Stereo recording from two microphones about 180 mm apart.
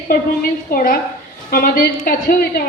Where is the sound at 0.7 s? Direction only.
55° left (ahead or behind).